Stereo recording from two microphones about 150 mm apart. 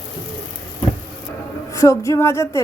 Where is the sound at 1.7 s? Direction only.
20° left (ahead or behind).